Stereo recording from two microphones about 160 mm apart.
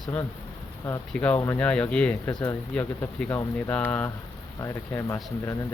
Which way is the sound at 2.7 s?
10° left (ahead or behind).